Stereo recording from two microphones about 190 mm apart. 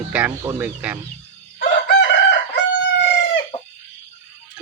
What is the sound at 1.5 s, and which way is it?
Chicken, 65° left (ahead or behind).